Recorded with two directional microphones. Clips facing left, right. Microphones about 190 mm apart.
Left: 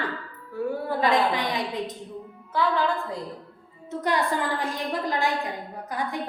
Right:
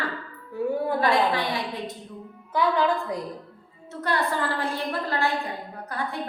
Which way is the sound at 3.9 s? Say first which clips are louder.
Left 1 dB; 15° left (ahead or behind).